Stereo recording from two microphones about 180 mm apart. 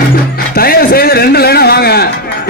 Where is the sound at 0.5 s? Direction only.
55° left (ahead or behind).